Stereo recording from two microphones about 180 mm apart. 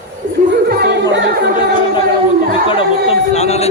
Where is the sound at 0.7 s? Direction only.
65° right (ahead or behind).